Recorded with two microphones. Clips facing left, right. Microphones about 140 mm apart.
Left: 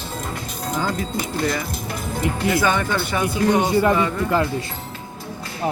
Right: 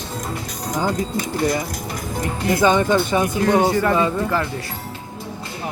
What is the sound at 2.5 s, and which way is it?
Speech, 20° right (ahead or behind).